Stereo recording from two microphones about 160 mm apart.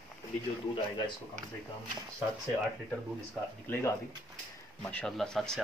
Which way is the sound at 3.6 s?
15° left (ahead or behind).